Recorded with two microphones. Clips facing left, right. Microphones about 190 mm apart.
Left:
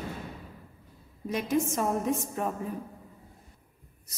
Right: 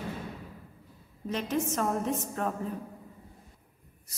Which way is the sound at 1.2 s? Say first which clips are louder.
Left 2 dB; 10° left (ahead or behind).